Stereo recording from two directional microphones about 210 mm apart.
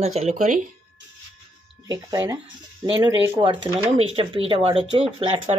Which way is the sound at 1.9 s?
15° right (ahead or behind).